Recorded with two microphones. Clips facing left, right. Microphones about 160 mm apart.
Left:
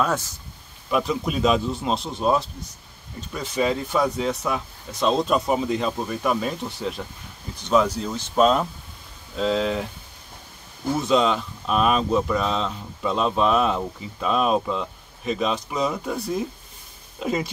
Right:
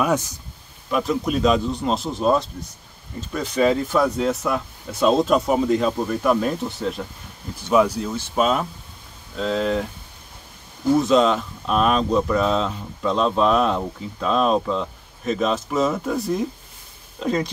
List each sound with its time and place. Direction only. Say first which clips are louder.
0.0 s speech: right 3 dB; 15° right (ahead or behind)
0.8 s speech: right 2 dB; centre (ahead or behind)
11.0 s speech: right 2 dB; centre (ahead or behind)